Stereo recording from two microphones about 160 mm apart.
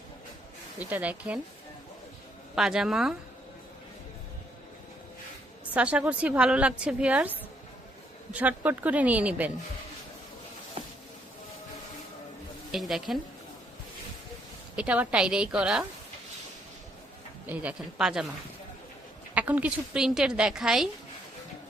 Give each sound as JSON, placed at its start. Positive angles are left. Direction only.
{"t": 0.8, "sound": "a woman's voice", "side_deg": -10}
{"t": 2.6, "sound": "a woman's voice", "side_deg": -5}
{"t": 5.7, "sound": "a woman's voice", "side_deg": -10}
{"t": 10.8, "sound": "a sound", "side_deg": -45}
{"t": 12.7, "sound": "a woman's voice", "side_deg": 0}
{"t": 14.8, "sound": "a woman's voice", "side_deg": -10}
{"t": 17.4, "sound": "a woman's voice", "side_deg": -10}
{"t": 19.3, "sound": "a woman's voice", "side_deg": -10}